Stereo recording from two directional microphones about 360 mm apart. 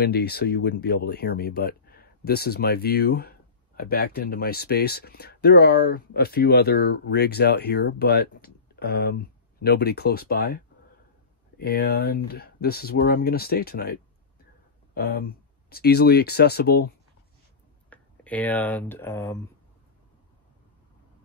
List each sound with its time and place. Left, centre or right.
0.0 s speech: left
15.0 s speech: left
17.8 s speech: centre